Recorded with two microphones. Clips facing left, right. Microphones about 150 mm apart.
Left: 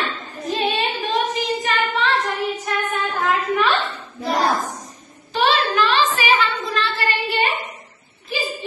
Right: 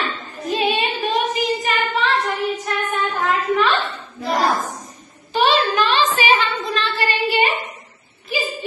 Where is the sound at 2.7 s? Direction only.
Centre (ahead or behind).